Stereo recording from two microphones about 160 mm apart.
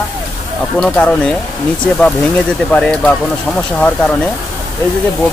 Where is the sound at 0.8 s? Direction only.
5° left (ahead or behind).